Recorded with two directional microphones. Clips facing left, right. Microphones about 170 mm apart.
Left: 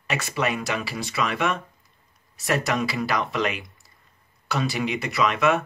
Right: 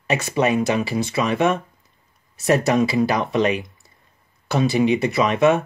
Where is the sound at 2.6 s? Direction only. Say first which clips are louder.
Right 7 dB; 25° right (ahead or behind).